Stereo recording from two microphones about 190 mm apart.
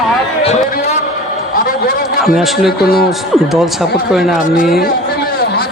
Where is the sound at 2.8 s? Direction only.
50° left (ahead or behind).